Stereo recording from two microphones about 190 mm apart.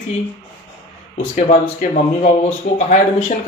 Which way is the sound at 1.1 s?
45° left (ahead or behind).